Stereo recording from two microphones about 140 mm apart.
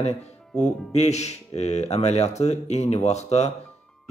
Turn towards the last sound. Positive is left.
turn(degrees=50)  # may be behind; listen again after turning